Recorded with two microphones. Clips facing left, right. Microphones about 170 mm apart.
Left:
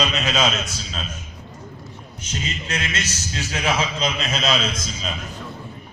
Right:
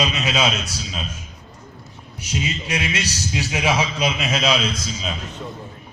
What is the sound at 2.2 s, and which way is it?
A man's voice, 10° right (ahead or behind).